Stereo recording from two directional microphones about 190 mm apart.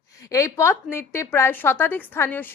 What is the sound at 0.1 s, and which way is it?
A woman's voice, 15° left (ahead or behind).